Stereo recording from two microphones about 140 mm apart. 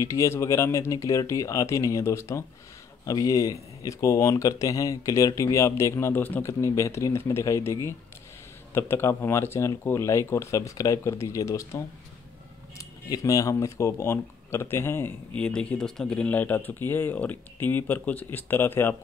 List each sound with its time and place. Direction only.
0.0 s speech: 20° left (ahead or behind)